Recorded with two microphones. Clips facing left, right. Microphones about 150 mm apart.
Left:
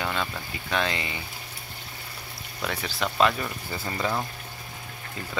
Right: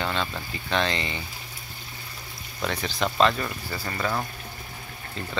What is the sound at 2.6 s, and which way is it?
Speech, 5° left (ahead or behind).